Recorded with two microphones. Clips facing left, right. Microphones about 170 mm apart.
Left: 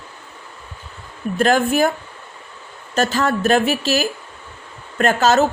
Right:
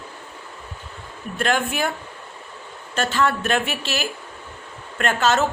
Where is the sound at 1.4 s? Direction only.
40° left (ahead or behind).